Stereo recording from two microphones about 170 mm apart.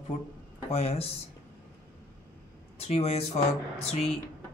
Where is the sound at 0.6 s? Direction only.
35° left (ahead or behind).